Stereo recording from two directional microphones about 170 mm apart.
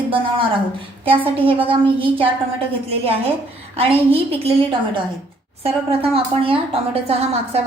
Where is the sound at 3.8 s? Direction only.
35° right (ahead or behind).